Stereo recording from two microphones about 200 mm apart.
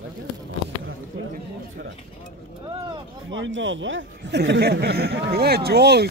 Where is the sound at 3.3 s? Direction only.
70° right (ahead or behind).